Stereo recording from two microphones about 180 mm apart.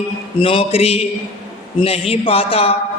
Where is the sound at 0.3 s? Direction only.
30° left (ahead or behind).